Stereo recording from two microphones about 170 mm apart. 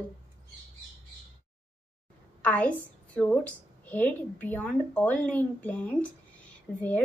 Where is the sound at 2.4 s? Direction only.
10° left (ahead or behind).